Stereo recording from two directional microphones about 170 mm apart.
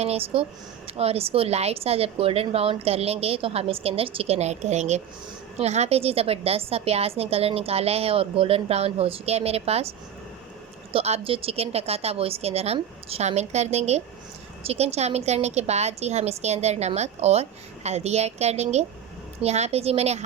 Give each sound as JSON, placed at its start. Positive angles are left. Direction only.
{"t": 0.0, "sound": "a woman's voice", "side_deg": -35}
{"t": 10.9, "sound": "a woman's voice", "side_deg": -35}